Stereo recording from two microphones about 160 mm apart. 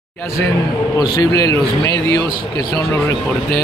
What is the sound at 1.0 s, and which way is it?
Speech, 25° left (ahead or behind).